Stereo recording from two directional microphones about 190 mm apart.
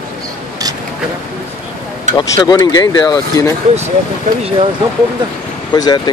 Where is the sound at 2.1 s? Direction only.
25° left (ahead or behind).